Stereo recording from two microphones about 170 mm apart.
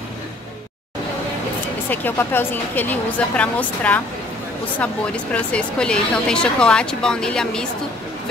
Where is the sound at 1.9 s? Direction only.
10° left (ahead or behind).